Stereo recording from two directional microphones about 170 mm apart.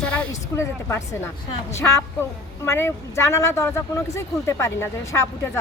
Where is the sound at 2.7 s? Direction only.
15° left (ahead or behind).